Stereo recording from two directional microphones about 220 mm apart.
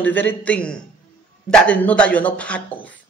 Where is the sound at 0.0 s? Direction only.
10° left (ahead or behind).